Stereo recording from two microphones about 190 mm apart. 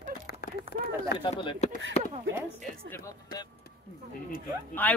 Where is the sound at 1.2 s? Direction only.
25° left (ahead or behind).